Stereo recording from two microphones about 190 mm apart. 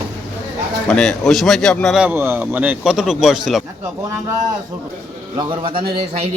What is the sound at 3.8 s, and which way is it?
Speech, 15° right (ahead or behind).